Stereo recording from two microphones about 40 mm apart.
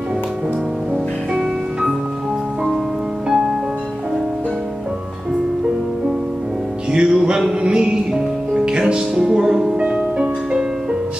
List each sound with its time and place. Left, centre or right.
3.3 s music: centre
6.9 s music: right
7.6 s music: right
9.8 s music: right